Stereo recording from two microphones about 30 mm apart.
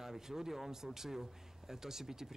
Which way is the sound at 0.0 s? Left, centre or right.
Centre.